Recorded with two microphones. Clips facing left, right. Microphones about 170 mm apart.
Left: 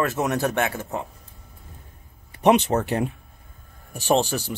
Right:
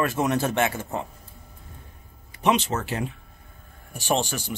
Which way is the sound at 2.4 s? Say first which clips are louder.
Left 5 dB; 60° left (ahead or behind).